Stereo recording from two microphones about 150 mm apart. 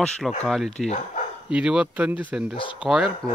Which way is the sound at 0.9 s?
55° left (ahead or behind).